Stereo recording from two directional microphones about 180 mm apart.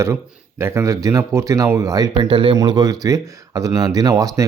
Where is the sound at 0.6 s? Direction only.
15° right (ahead or behind).